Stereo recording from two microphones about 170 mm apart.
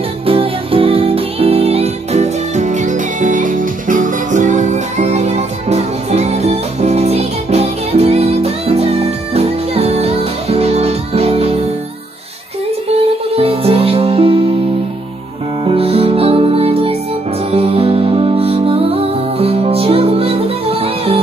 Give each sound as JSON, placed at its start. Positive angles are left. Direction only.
{"t": 0.3, "sound": "music", "side_deg": -35}
{"t": 12.9, "sound": "music", "side_deg": -35}
{"t": 15.6, "sound": "music", "side_deg": -35}